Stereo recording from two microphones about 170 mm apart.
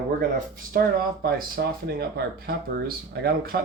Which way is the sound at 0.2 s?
55° right (ahead or behind).